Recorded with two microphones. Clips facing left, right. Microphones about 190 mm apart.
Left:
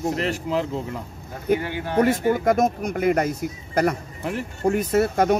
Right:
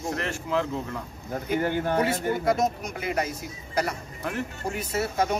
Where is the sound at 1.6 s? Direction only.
50° right (ahead or behind).